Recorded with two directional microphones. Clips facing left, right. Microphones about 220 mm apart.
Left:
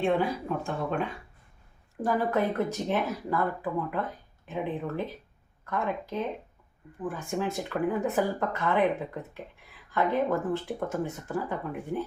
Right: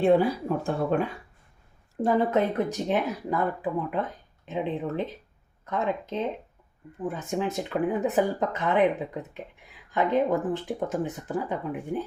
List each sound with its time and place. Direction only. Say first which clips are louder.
0.0 s speech: right 5 dB; 35° right (ahead or behind)
2.0 s speech: right 4 dB; 25° right (ahead or behind)
9.9 s speech: right 3 dB; 20° right (ahead or behind)